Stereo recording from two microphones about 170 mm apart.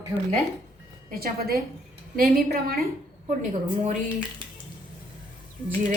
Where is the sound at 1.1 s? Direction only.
60° right (ahead or behind).